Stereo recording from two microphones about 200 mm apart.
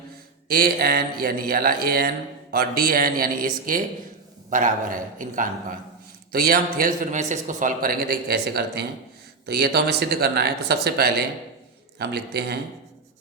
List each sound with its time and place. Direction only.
0.4 s a man's voice: 50° right (ahead or behind)